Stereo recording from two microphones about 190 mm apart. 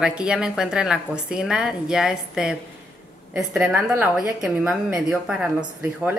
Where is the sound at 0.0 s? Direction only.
5° right (ahead or behind).